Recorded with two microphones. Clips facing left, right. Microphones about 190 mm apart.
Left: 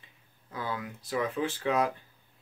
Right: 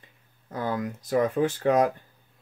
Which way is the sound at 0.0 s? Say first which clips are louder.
Right 3 dB; 45° right (ahead or behind).